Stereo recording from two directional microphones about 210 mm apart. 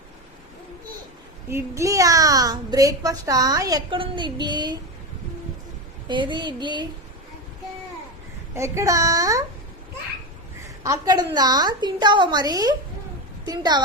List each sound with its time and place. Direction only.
1.5 s a child's voice: 15° right (ahead or behind)
6.1 s a woman's voice: 20° right (ahead or behind)
8.5 s a child's voice: 15° right (ahead or behind)
10.8 s a woman's voice: 20° right (ahead or behind)